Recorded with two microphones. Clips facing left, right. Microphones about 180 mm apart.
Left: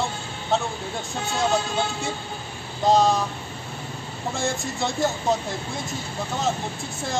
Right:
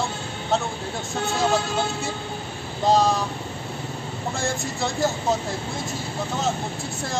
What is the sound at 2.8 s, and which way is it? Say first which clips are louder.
Speech: left 1 dB; centre (ahead or behind).